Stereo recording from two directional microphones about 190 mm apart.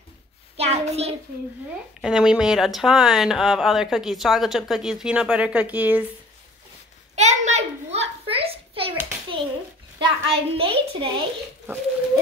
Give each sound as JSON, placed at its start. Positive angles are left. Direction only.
{"t": 0.6, "sound": "hands", "side_deg": -35}
{"t": 2.0, "sound": "speech", "side_deg": -5}
{"t": 7.2, "sound": "a sound", "side_deg": -35}
{"t": 9.9, "sound": "a woman's voice", "side_deg": -30}